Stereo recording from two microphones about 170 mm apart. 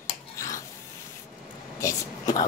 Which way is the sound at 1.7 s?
20° left (ahead or behind).